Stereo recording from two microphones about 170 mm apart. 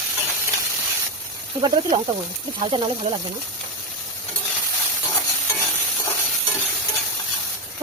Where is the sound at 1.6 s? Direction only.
25° right (ahead or behind).